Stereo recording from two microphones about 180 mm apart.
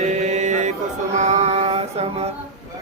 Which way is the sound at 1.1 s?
40° right (ahead or behind).